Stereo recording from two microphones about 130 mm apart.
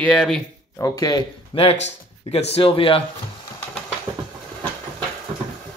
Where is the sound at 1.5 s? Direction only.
50° left (ahead or behind).